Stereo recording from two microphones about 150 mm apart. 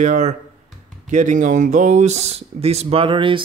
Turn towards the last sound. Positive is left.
turn(degrees=-35)  # may be behind; listen again after turning